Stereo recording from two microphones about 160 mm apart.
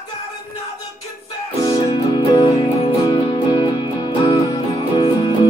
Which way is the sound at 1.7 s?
40° left (ahead or behind).